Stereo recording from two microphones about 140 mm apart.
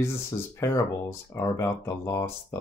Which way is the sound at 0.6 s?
20° left (ahead or behind).